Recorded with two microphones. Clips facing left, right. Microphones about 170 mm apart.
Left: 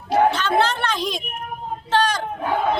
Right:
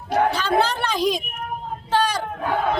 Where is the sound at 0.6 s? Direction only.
10° right (ahead or behind).